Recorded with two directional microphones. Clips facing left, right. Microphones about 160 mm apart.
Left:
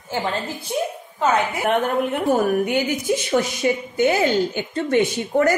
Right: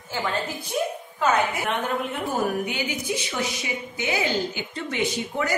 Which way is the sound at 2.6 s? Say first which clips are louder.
Left 8 dB; 50° left (ahead or behind).